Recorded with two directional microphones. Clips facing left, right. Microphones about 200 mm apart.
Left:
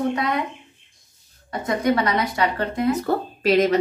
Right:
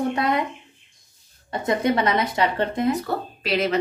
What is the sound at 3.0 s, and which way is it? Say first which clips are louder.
Speech: left 6 dB; 45° left (ahead or behind).